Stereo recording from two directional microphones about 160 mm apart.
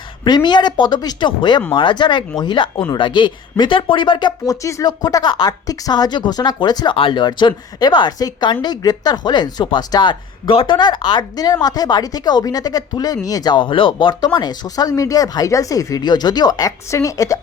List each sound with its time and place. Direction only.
0.3 s speech: 25° left (ahead or behind)